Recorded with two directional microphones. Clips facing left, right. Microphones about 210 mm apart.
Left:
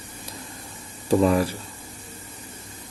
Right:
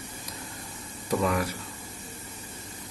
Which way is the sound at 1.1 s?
30° left (ahead or behind).